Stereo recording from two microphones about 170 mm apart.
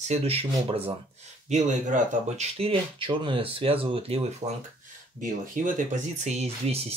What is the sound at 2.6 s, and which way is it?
Speech, 35° right (ahead or behind).